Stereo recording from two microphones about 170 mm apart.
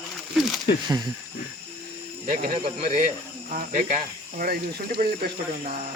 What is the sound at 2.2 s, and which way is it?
Speech, 50° right (ahead or behind).